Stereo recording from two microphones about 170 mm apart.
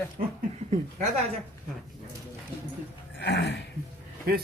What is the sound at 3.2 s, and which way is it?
Speech, 90° left.